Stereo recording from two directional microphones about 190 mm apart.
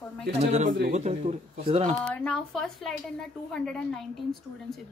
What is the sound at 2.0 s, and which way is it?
A woman's voice, 5° left (ahead or behind).